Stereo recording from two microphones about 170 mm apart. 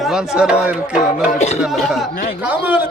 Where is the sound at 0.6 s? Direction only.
5° right (ahead or behind).